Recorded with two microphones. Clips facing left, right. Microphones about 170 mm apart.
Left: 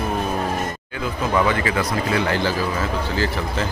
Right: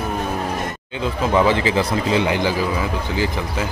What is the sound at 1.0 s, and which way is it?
A man's voice, 25° right (ahead or behind).